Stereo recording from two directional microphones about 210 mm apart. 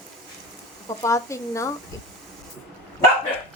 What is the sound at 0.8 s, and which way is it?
Speech, 15° left (ahead or behind).